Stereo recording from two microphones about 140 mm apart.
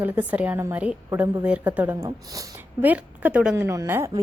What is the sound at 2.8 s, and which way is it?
A woman's voice, 10° right (ahead or behind).